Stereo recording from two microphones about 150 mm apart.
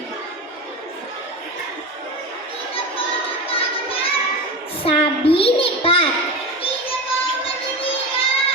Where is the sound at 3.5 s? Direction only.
40° left (ahead or behind).